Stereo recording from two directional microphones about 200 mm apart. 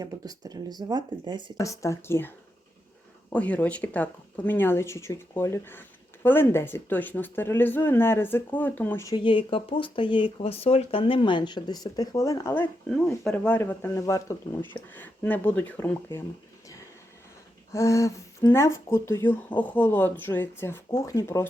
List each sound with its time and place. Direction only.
0.0 s speech: 15° right (ahead or behind)
1.5 s speech: 15° left (ahead or behind)
12.9 s speech: 5° left (ahead or behind)
17.7 s speech: 15° left (ahead or behind)